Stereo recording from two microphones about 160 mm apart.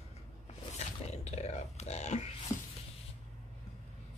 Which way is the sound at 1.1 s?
45° left (ahead or behind).